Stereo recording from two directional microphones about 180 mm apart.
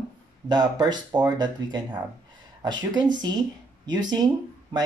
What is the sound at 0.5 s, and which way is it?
Speech, 20° right (ahead or behind).